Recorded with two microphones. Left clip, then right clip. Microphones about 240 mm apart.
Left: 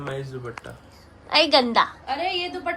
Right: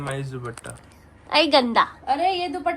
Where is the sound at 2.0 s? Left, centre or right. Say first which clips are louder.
Right 4 dB; right.